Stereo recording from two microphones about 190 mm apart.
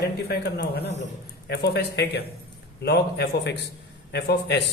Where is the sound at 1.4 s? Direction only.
60° left (ahead or behind).